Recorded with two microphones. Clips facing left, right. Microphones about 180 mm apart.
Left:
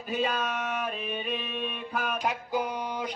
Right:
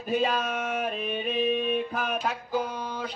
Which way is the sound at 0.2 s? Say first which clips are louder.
Right 2 dB; 45° right (ahead or behind).